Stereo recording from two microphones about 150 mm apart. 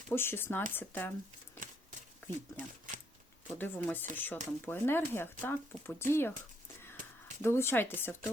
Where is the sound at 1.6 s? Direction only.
65° right (ahead or behind).